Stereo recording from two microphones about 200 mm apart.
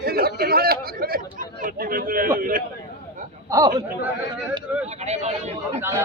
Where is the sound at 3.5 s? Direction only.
15° right (ahead or behind).